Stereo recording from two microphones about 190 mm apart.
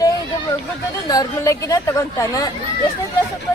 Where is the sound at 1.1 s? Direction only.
20° left (ahead or behind).